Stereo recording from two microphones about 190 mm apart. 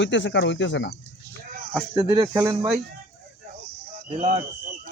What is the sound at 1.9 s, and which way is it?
Speech, 30° right (ahead or behind).